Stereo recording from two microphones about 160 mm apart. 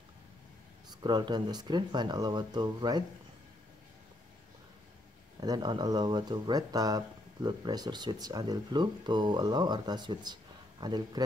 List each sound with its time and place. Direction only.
0.8 s speech: 30° right (ahead or behind)
5.4 s speech: 25° right (ahead or behind)